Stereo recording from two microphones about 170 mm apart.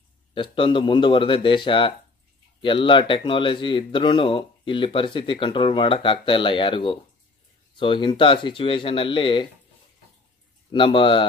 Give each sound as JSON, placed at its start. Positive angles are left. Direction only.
{"t": 0.3, "sound": "speech", "side_deg": 30}
{"t": 10.7, "sound": "speech", "side_deg": 30}